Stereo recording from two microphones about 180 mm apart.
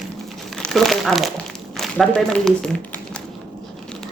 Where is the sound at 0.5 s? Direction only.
Centre (ahead or behind).